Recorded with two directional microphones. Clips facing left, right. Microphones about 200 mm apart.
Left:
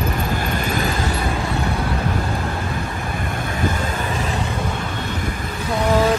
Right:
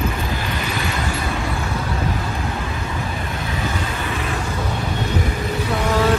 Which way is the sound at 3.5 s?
50° left (ahead or behind).